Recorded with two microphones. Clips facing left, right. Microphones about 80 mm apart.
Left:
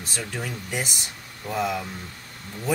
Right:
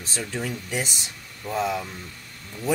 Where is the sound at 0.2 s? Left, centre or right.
Centre.